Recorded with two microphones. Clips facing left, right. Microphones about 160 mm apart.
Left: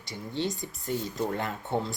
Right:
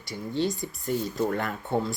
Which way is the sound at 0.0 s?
20° left (ahead or behind).